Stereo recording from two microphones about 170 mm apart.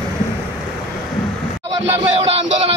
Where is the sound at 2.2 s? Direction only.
35° right (ahead or behind).